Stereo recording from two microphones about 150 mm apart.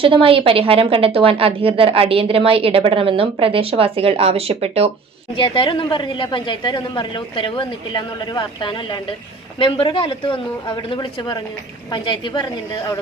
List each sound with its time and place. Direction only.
0.0 s a woman's voice: 35° right (ahead or behind)
5.3 s a woman's voice: 35° left (ahead or behind)